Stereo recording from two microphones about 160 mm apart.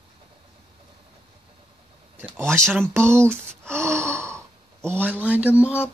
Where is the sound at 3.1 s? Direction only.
15° right (ahead or behind).